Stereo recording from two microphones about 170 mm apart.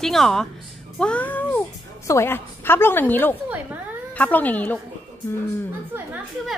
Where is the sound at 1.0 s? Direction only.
10° left (ahead or behind).